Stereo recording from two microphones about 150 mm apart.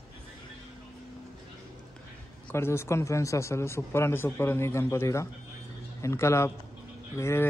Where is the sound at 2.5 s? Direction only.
15° left (ahead or behind).